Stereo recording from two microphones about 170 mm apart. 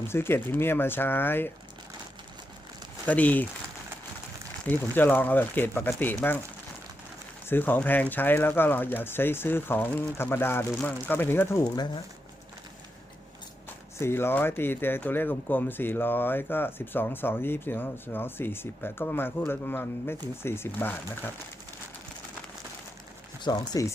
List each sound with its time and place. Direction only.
0.1 s speech: 15° left (ahead or behind)
3.1 s speech: 10° left (ahead or behind)
4.6 s speech: 10° left (ahead or behind)
7.4 s speech: 10° left (ahead or behind)
14.0 s speech: 15° left (ahead or behind)
23.4 s speech: 25° left (ahead or behind)